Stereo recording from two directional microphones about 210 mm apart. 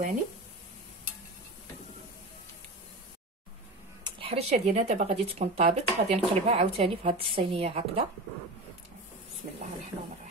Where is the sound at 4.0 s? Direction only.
25° right (ahead or behind).